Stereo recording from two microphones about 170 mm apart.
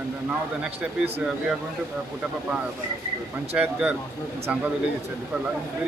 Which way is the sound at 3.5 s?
10° right (ahead or behind).